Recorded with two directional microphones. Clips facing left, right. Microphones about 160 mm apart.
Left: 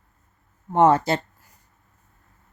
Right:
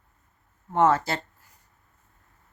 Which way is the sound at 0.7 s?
20° left (ahead or behind).